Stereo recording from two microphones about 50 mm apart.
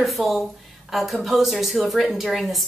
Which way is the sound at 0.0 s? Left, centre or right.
Centre.